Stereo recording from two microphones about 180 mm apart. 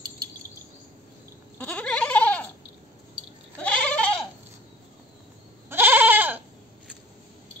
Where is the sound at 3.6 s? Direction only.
5° left (ahead or behind).